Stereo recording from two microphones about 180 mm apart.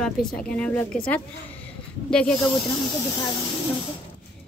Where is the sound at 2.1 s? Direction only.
5° left (ahead or behind).